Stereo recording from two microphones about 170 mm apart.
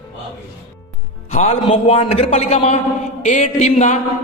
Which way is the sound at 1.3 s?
40° left (ahead or behind).